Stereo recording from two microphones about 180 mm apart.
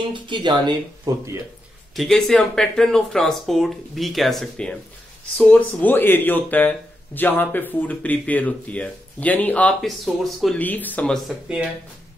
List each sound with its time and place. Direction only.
0.1 s speech: 25° right (ahead or behind)
2.0 s speech: centre (ahead or behind)